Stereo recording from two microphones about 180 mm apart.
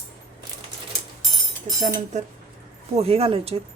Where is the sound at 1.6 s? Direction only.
45° right (ahead or behind).